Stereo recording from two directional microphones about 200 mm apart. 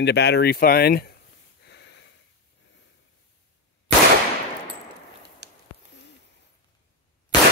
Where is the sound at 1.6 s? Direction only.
60° left (ahead or behind).